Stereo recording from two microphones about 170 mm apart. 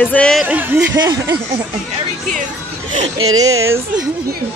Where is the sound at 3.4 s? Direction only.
20° right (ahead or behind).